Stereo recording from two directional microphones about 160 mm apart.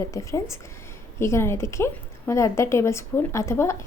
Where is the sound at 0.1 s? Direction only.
20° left (ahead or behind).